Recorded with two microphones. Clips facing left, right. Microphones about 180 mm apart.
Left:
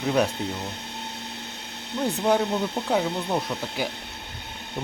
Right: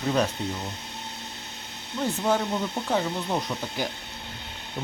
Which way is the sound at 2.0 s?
15° left (ahead or behind).